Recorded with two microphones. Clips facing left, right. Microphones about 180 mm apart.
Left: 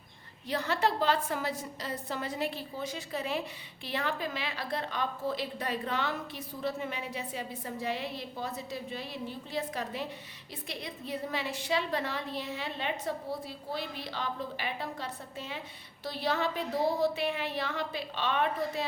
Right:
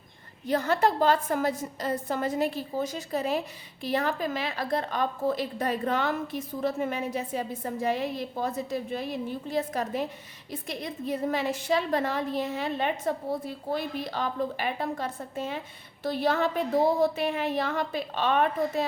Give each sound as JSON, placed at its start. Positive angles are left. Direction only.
{"t": 0.4, "sound": "a woman's voice", "side_deg": -45}